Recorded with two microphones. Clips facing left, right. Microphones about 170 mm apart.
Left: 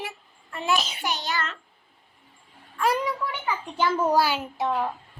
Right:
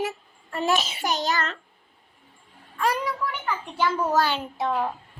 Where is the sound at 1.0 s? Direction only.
40° right (ahead or behind).